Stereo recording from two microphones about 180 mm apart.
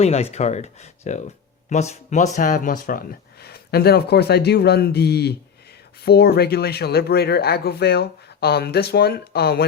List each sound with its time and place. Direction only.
0.0 s speech: 35° left (ahead or behind); by 9.6 s 60° left (ahead or behind)